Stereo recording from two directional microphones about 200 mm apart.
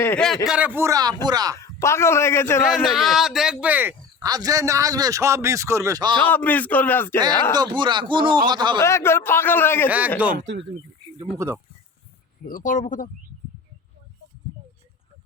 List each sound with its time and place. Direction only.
0.0 s a man's voice: 5° left (ahead or behind)
0.4 s speech: 5° right (ahead or behind)
1.5 s a man's voice: 15° left (ahead or behind)
2.6 s speech: centre (ahead or behind); by 6.1 s 20° right (ahead or behind)
6.1 s a man's voice: 10° left (ahead or behind)
7.5 s a man's voice: 20° right (ahead or behind)
8.8 s a man's voice: 15° left (ahead or behind)
10.3 s speech: 60° right (ahead or behind)
11.3 s speech: 10° right (ahead or behind)
12.5 s speech: 40° left (ahead or behind)